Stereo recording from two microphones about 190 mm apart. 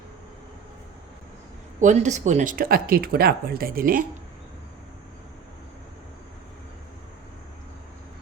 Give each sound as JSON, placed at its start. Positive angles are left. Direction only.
{"t": 1.8, "sound": "speech", "side_deg": -40}